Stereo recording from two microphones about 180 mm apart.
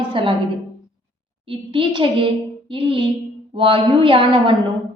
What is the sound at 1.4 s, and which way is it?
A child's voice, 30° right (ahead or behind).